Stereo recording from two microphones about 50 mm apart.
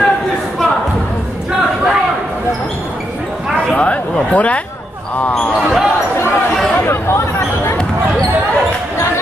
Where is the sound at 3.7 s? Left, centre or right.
Left.